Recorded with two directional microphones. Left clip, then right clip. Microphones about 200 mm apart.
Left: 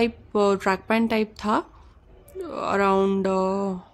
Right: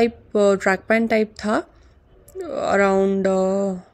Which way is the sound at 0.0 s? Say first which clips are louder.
Right 4 dB; 10° right (ahead or behind).